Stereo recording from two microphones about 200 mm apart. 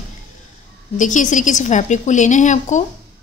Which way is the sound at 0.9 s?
40° left (ahead or behind).